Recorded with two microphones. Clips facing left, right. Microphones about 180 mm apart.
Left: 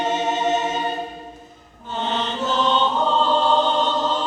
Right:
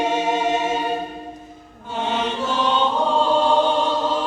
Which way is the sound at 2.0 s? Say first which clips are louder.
Right 2 dB; 10° right (ahead or behind).